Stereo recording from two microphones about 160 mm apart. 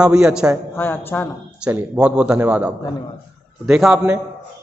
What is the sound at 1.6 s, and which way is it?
A man's voice, 10° right (ahead or behind).